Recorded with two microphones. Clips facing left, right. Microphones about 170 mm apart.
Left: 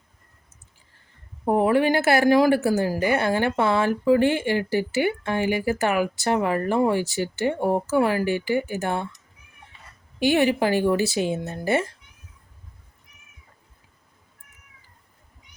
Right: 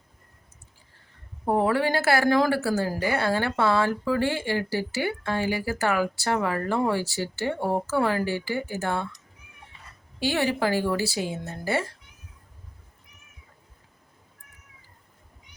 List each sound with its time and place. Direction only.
1.5 s speech: 15° left (ahead or behind)
10.2 s speech: 15° left (ahead or behind)